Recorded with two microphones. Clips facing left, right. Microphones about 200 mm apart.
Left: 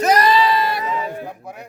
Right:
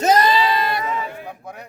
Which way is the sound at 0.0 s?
25° right (ahead or behind).